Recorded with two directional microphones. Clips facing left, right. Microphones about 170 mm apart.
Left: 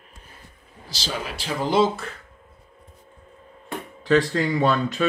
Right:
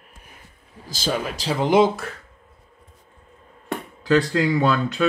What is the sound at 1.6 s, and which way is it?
Speech, 15° right (ahead or behind).